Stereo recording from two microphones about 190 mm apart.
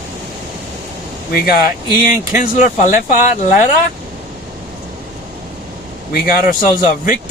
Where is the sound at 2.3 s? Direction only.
45° left (ahead or behind).